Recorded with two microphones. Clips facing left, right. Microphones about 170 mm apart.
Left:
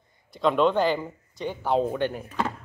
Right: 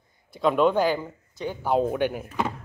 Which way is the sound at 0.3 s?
5° right (ahead or behind).